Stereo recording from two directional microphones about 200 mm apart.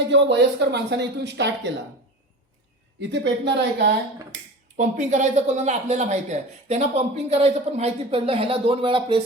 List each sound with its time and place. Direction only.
0.1 s speech: 60° right (ahead or behind)
3.1 s speech: 60° right (ahead or behind)
4.8 s speech: 35° right (ahead or behind)